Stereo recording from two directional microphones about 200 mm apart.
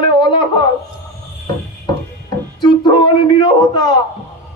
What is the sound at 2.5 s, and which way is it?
A man's voice, 20° left (ahead or behind).